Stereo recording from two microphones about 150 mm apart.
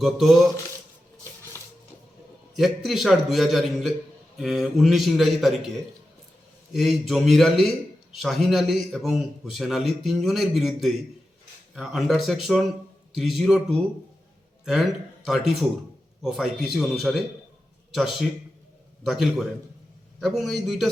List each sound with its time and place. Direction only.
0.0 s a man's voice: centre (ahead or behind)
1.5 s a sound: 15° left (ahead or behind)
2.6 s a man's voice: centre (ahead or behind)
6.7 s a man's voice: centre (ahead or behind)
14.6 s a man's voice: 5° right (ahead or behind)